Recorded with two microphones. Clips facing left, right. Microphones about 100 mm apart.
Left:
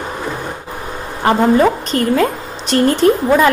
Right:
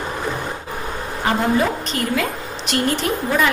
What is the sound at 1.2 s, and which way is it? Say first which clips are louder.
A woman's voice: left 7 dB; 40° left (ahead or behind).